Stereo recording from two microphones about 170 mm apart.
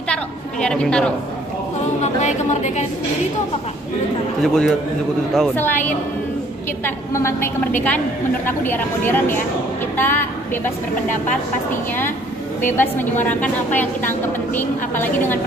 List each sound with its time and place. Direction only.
0.1 s a woman's voice: 5° left (ahead or behind)
2.0 s a woman's voice: 45° left (ahead or behind)
4.4 s a woman's voice: centre (ahead or behind)
7.2 s a woman's voice: 15° left (ahead or behind)
9.9 s a sound: 10° left (ahead or behind)
12.6 s a woman's voice: 10° left (ahead or behind)